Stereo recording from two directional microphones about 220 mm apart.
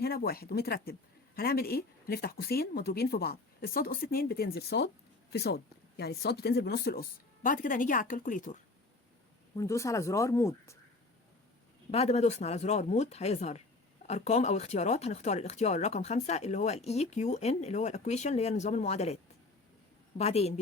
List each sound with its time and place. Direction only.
0.0 s speech: 45° left (ahead or behind)
9.6 s speech: 15° left (ahead or behind)
11.9 s speech: 30° left (ahead or behind)